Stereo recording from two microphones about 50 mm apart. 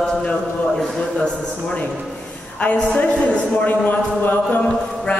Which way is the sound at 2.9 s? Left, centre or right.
Left.